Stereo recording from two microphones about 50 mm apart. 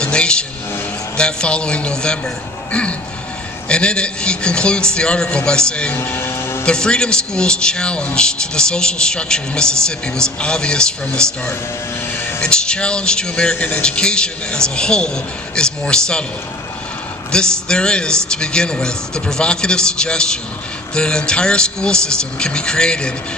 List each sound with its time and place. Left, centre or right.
0.0 s vehicle: left
1.1 s a man's voice: centre
3.7 s a man's voice: left
6.1 s speech: left
6.7 s a man's voice: centre
17.3 s a man's voice: centre